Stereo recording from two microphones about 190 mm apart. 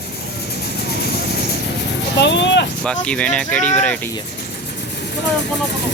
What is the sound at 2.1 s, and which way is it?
Speech, 70° left (ahead or behind).